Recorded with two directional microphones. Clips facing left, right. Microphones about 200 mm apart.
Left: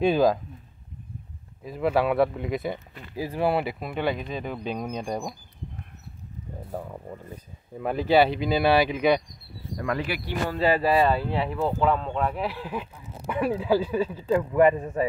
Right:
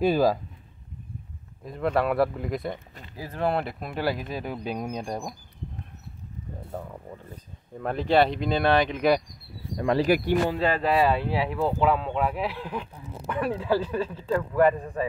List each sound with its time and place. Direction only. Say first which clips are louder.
0.0 s speech: left 1 dB; 5° right (ahead or behind)
1.6 s speech: left 2 dB; 5° left (ahead or behind)
6.7 s speech: left 3 dB; 5° left (ahead or behind)
9.8 s speech: right 5 dB; 30° right (ahead or behind)
10.0 s speech: right 9 dB; 45° right (ahead or behind)
10.6 s speech: left 2 dB; 5° left (ahead or behind); by 15.0 s 20° left (ahead or behind)